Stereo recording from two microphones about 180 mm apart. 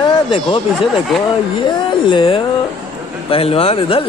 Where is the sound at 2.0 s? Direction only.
30° left (ahead or behind).